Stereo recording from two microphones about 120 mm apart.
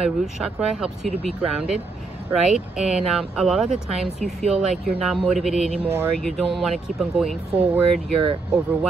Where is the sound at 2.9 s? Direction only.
5° right (ahead or behind).